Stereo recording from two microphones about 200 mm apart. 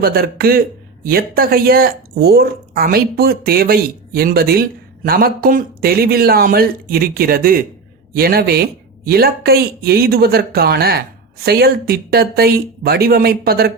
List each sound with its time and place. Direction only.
0.0 s speech: 50° right (ahead or behind)